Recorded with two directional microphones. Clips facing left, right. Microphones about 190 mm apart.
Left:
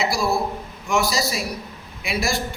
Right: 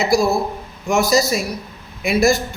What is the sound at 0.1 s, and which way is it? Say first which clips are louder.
A man's voice: right 6 dB; 45° right (ahead or behind).